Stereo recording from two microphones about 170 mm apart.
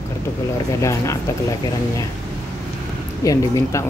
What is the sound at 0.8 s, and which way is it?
Speech, 20° left (ahead or behind).